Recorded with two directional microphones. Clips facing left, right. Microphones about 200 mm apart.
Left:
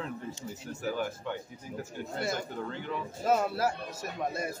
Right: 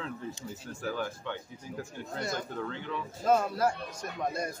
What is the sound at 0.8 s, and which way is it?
A man's voice, 10° left (ahead or behind).